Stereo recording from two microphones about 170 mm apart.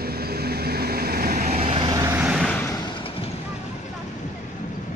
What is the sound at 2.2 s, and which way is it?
Vehicle, centre (ahead or behind).